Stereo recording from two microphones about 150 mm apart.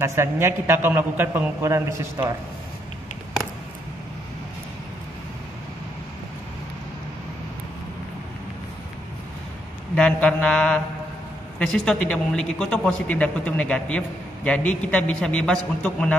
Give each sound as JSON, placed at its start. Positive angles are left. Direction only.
{"t": 0.0, "sound": "a man's voice", "side_deg": -15}
{"t": 9.9, "sound": "a man's voice", "side_deg": 10}